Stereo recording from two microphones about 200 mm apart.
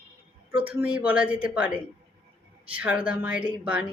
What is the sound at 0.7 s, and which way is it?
Speech, 5° right (ahead or behind).